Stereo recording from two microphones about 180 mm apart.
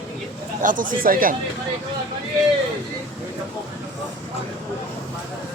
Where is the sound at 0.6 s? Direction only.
50° right (ahead or behind).